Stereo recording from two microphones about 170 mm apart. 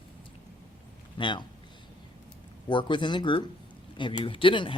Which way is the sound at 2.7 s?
25° left (ahead or behind).